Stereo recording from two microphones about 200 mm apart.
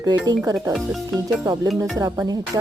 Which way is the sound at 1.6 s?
Centre (ahead or behind).